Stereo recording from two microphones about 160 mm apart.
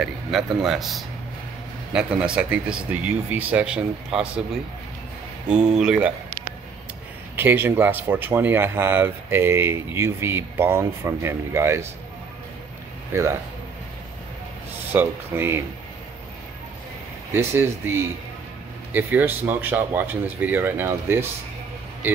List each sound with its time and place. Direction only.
0.0 s speech: centre (ahead or behind)
5.5 s speech: 5° right (ahead or behind)
7.3 s speech: 10° right (ahead or behind)
13.1 s speech: 15° right (ahead or behind)
14.9 s speech: 15° right (ahead or behind)
17.3 s speech: 15° right (ahead or behind)